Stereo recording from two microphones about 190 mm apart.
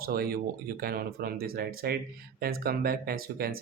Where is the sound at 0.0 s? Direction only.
50° right (ahead or behind).